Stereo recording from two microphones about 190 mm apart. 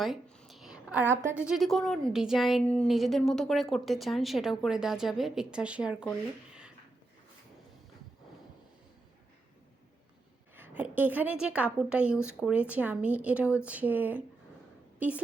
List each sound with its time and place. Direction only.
0.0 s a sound: centre (ahead or behind)
1.4 s speech: centre (ahead or behind)
10.5 s a woman's voice: 10° right (ahead or behind)